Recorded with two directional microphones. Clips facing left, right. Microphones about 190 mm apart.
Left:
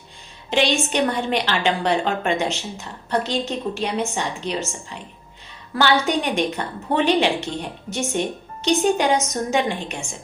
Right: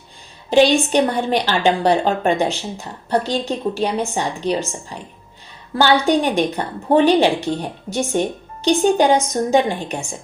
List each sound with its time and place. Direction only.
0.5 s a woman's voice: 35° right (ahead or behind)